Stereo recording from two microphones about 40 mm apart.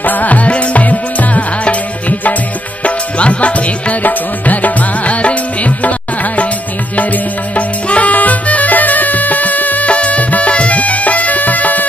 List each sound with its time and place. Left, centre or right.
0.0 s music: left
7.5 s music: left